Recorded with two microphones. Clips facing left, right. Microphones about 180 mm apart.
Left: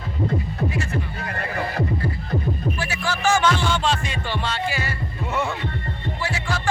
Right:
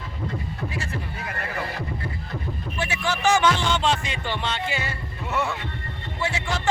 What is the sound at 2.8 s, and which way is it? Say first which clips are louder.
Music: right 2 dB; 20° right (ahead or behind).